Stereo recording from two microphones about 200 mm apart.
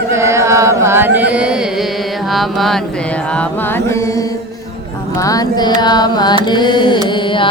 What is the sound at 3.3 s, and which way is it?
Mantra, 10° left (ahead or behind).